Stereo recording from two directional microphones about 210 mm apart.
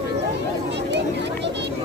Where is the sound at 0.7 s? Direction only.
55° right (ahead or behind).